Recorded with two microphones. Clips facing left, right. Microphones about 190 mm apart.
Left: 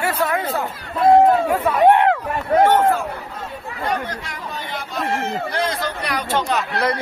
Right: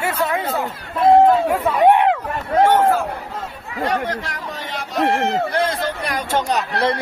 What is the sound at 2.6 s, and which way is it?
Speech, 10° right (ahead or behind).